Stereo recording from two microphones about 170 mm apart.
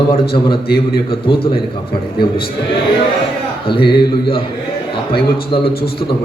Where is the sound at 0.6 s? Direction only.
65° left (ahead or behind).